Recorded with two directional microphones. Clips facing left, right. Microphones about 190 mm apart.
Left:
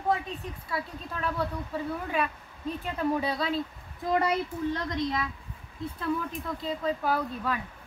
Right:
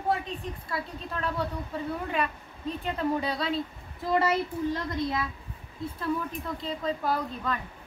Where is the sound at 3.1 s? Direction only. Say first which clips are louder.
Even; centre (ahead or behind).